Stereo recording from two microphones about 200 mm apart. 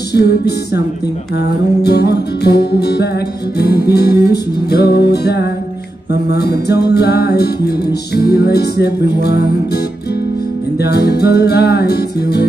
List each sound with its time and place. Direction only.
0.1 s music: 55° left (ahead or behind)
10.8 s music: 55° left (ahead or behind)